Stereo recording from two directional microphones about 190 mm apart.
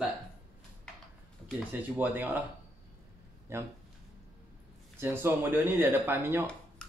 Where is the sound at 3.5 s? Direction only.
15° right (ahead or behind).